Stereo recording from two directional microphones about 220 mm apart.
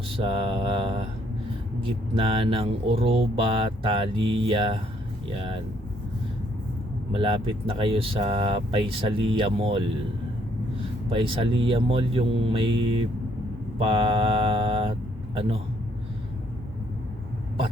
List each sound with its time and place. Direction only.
0.2 s speech: 25° right (ahead or behind)
7.1 s speech: 25° right (ahead or behind)
11.1 s speech: 25° right (ahead or behind)